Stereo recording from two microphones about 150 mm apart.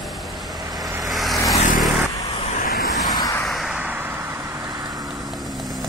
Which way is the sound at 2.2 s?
45° left (ahead or behind).